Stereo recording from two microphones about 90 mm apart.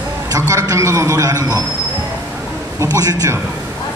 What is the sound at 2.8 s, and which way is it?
Speech, 40° right (ahead or behind).